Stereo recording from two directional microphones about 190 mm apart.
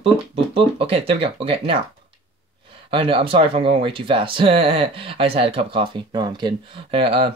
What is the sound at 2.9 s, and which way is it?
Speech, 30° right (ahead or behind).